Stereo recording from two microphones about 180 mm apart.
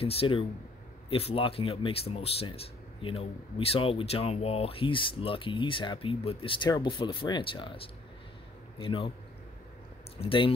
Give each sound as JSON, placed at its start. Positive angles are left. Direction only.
{"t": 0.0, "sound": "a man's voice", "side_deg": 30}
{"t": 10.1, "sound": "speech", "side_deg": 30}